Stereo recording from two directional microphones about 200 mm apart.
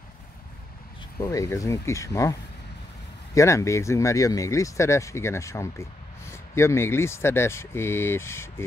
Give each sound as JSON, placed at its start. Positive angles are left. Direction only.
{"t": 1.2, "sound": "speech", "side_deg": 15}
{"t": 3.3, "sound": "speech", "side_deg": 15}